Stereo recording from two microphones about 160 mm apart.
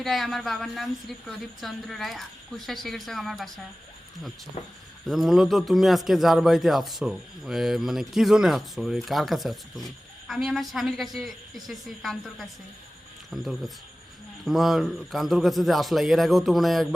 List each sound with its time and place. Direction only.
0.0 s a man's voice: centre (ahead or behind)
4.6 s speech: 45° left (ahead or behind)
5.0 s a man's voice: centre (ahead or behind)